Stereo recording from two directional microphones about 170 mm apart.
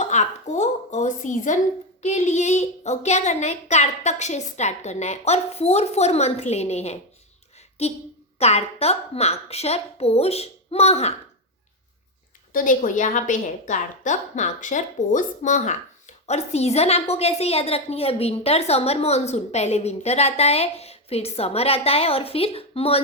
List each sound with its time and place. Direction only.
0.0 s a sound: 45° left (ahead or behind)
2.0 s a woman's voice: 40° left (ahead or behind)
12.5 s a woman's voice: 50° left (ahead or behind); by 23.0 s 35° left (ahead or behind)